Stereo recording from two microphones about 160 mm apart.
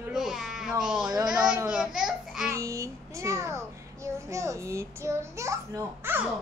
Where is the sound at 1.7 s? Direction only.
5° right (ahead or behind).